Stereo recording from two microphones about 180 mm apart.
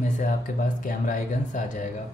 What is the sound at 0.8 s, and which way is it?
Speech, 45° left (ahead or behind).